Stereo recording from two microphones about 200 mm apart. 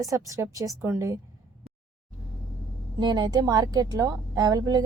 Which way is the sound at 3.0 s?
20° right (ahead or behind).